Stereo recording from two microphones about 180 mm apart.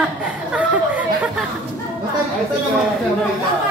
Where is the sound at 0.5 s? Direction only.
10° right (ahead or behind).